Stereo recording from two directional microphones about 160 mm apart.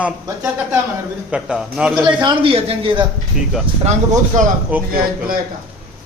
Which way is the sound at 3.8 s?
50° right (ahead or behind).